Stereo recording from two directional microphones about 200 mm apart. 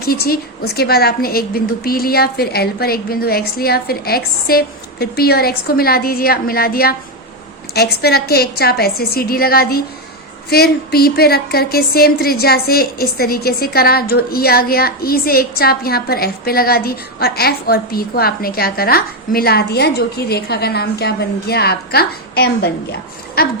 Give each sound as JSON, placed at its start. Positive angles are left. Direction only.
{"t": 0.0, "sound": "a woman's voice", "side_deg": 50}